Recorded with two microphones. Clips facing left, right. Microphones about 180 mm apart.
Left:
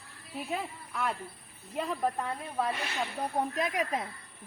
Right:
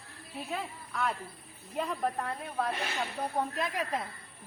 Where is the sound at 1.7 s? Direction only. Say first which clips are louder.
Left 1 dB; centre (ahead or behind).